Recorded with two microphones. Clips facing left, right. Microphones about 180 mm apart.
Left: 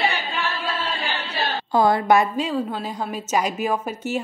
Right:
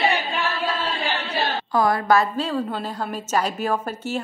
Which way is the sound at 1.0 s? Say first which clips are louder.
Right 2 dB; centre (ahead or behind).